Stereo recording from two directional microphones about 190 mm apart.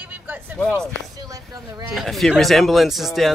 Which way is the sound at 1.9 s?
Centre (ahead or behind).